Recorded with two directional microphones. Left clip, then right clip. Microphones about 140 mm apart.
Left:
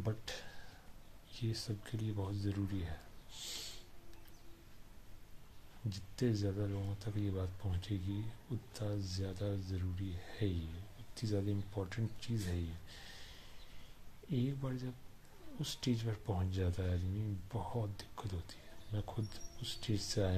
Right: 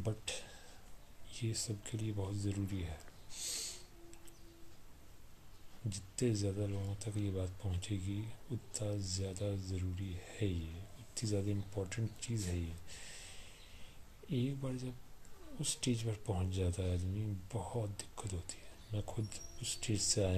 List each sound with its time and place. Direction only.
0.0 s speech: 15° right (ahead or behind)
5.9 s speech: 15° right (ahead or behind)